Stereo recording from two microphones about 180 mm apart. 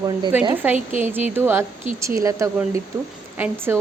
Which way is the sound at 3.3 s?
10° right (ahead or behind).